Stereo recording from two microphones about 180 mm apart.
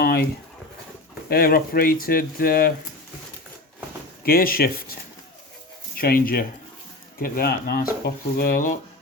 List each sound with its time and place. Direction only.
0.0 s a sound: 55° left (ahead or behind)
1.3 s speech: 55° left (ahead or behind)
4.2 s speech: 55° left (ahead or behind)
6.0 s speech: 55° left (ahead or behind)